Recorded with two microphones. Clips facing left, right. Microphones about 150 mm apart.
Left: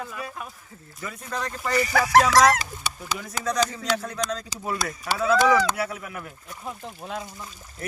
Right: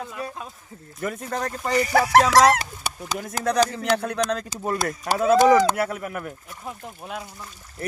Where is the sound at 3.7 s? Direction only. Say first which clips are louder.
Right 4 dB; 60° right (ahead or behind).